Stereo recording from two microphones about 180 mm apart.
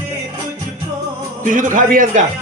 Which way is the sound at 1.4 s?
45° right (ahead or behind).